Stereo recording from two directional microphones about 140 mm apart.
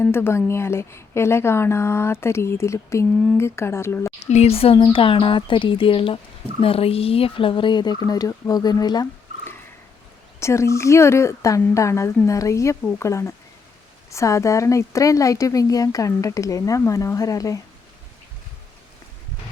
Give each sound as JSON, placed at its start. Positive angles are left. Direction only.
{"t": 0.0, "sound": "speech", "side_deg": 15}
{"t": 4.3, "sound": "speech", "side_deg": 50}
{"t": 10.4, "sound": "speech", "side_deg": 20}